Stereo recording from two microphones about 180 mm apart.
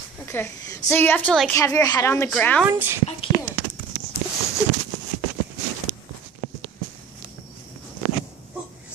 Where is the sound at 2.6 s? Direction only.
15° right (ahead or behind).